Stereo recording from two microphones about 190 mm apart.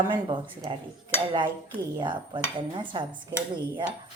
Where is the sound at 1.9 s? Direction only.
25° right (ahead or behind).